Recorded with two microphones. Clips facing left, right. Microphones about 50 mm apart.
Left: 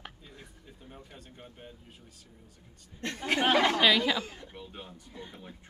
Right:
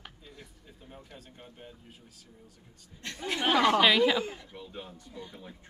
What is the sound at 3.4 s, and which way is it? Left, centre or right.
Speech, centre.